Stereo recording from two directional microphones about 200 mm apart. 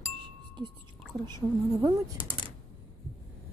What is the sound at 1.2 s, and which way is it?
Speech, 20° right (ahead or behind).